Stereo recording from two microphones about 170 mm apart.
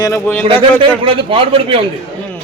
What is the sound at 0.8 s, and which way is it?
A man's voice, 30° right (ahead or behind).